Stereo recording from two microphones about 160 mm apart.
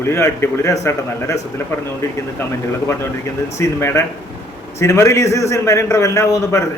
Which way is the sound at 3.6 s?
20° left (ahead or behind).